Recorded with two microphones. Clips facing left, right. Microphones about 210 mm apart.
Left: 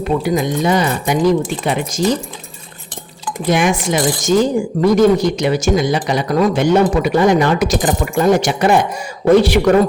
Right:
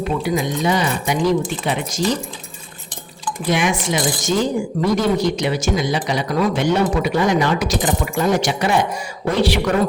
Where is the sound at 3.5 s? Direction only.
50° left (ahead or behind).